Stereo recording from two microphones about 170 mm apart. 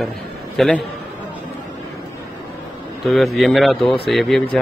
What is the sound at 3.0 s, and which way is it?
A man's voice, centre (ahead or behind).